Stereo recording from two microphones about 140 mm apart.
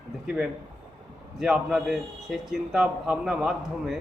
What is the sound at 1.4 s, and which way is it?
A man's voice, 5° right (ahead or behind).